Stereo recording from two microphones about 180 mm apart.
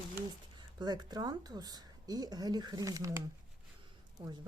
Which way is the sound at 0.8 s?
25° right (ahead or behind).